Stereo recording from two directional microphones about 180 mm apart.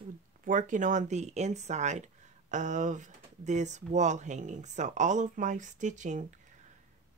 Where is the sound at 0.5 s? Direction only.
45° right (ahead or behind).